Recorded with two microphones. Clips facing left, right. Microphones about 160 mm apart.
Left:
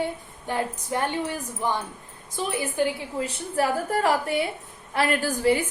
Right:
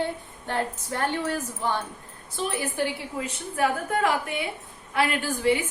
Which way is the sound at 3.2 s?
35° left (ahead or behind).